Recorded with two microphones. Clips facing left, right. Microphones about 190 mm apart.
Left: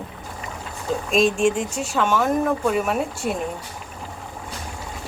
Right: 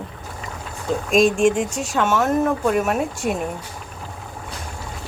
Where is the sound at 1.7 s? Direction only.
5° left (ahead or behind).